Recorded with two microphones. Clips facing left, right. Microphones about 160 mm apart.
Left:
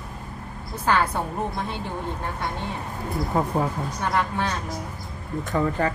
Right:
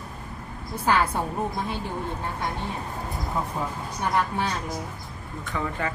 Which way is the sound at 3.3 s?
60° left (ahead or behind).